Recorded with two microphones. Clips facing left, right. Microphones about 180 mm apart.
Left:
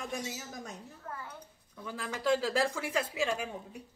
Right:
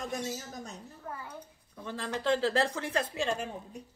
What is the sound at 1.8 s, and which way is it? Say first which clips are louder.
Speech: right 1 dB; 10° left (ahead or behind).